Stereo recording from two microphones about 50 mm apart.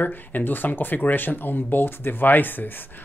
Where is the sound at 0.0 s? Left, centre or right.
Left.